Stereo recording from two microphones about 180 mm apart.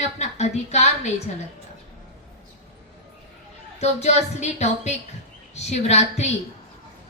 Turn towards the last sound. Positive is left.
turn(degrees=40)  # may be behind; listen again after turning